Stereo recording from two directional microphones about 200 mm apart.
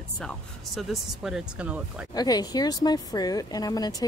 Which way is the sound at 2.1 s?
20° left (ahead or behind).